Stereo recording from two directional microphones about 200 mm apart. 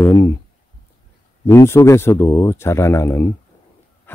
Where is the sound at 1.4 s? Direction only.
10° left (ahead or behind).